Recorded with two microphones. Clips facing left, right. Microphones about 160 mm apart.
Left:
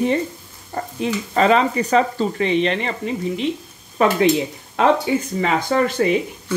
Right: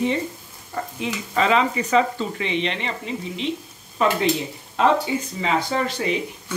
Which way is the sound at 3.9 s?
60° left (ahead or behind).